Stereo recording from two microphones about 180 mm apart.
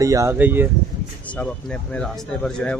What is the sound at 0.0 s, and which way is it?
Speech, 15° right (ahead or behind).